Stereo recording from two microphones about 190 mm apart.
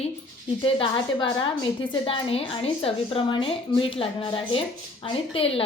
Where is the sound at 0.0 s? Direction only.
25° left (ahead or behind).